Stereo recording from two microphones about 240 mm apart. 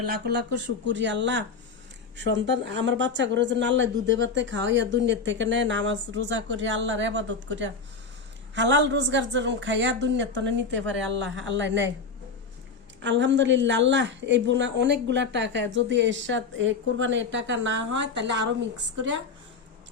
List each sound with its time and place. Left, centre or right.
0.1 s speech: right
13.0 s speech: right